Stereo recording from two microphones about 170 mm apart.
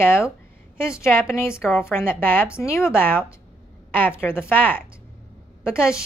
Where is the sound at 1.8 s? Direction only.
15° left (ahead or behind).